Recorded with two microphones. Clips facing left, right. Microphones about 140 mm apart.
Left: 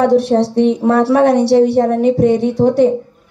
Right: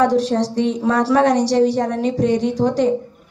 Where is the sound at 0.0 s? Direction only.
60° left (ahead or behind).